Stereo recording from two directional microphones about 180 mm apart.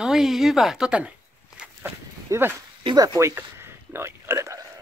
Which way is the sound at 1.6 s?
10° right (ahead or behind).